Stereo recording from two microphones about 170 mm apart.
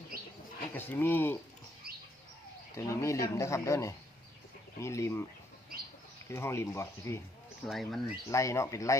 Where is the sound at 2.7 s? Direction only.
15° left (ahead or behind).